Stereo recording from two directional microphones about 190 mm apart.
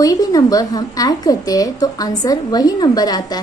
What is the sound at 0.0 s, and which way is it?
A woman's voice, 20° left (ahead or behind).